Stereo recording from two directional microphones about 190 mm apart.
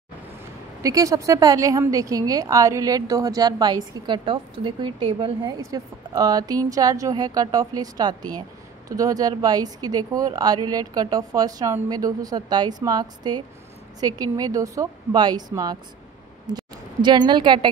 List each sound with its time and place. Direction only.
0.8 s a woman's voice: 15° right (ahead or behind)